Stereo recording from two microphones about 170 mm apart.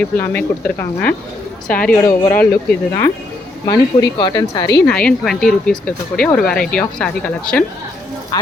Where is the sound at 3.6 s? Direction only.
25° left (ahead or behind).